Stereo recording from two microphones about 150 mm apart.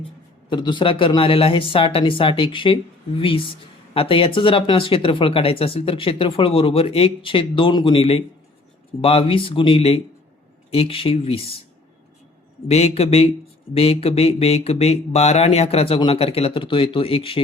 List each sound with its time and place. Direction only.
0.5 s speech: 30° left (ahead or behind)
12.6 s speech: 45° left (ahead or behind)